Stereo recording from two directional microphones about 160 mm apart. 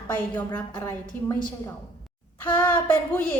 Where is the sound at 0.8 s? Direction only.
15° left (ahead or behind).